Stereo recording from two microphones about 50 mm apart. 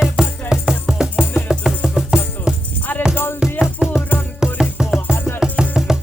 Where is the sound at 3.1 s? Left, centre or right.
Left.